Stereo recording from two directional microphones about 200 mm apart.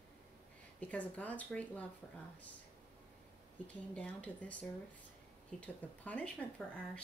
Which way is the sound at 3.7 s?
5° left (ahead or behind).